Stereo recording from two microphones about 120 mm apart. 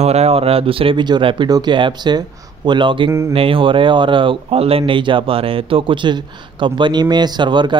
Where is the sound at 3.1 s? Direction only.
25° right (ahead or behind).